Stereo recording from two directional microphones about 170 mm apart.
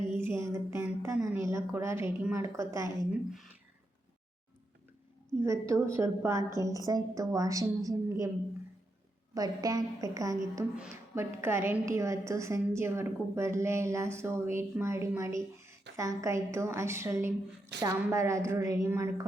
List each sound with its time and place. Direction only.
0.2 s a woman's voice: 15° right (ahead or behind)
5.4 s a woman's voice: 15° right (ahead or behind)
9.3 s a woman's voice: 20° right (ahead or behind)